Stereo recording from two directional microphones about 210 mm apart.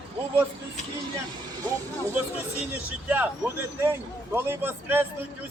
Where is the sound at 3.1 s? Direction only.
10° right (ahead or behind).